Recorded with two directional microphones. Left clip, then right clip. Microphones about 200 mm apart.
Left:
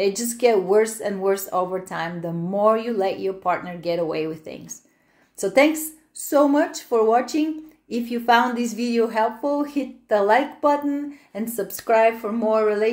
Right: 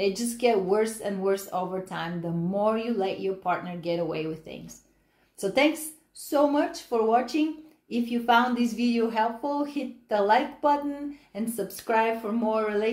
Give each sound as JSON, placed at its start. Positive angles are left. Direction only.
{"t": 0.0, "sound": "speech", "side_deg": 15}